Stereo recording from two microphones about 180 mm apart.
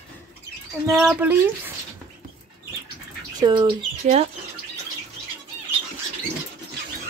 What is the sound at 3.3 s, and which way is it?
Speech, 25° right (ahead or behind).